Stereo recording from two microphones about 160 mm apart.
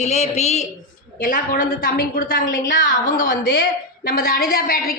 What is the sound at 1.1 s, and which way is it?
A woman's voice, 55° left (ahead or behind).